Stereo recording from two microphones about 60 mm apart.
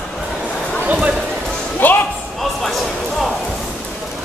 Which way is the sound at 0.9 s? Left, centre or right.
Right.